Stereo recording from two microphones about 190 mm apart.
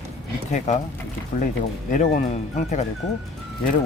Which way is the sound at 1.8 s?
40° left (ahead or behind).